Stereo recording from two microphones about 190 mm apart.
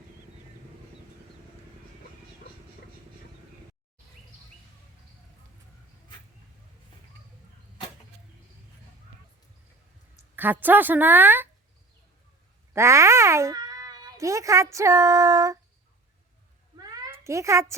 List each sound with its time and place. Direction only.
10.3 s a woman's voice: 10° right (ahead or behind)
12.7 s a child's voice: 15° right (ahead or behind)
16.7 s meow: 20° right (ahead or behind)